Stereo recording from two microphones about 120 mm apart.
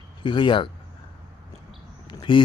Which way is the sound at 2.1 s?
40° left (ahead or behind).